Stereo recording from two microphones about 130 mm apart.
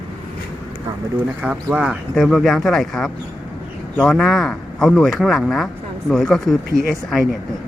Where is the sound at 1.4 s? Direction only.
10° right (ahead or behind).